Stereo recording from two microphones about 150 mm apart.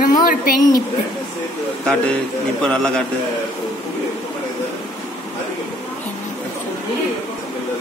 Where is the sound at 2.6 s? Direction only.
5° left (ahead or behind).